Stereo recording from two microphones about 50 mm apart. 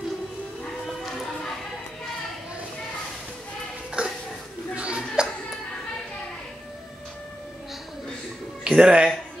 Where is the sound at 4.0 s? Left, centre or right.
Centre.